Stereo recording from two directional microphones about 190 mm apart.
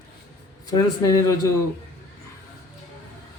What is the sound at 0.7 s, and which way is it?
Speech, 15° left (ahead or behind).